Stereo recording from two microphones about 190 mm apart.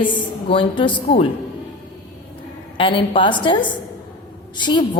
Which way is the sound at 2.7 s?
25° left (ahead or behind).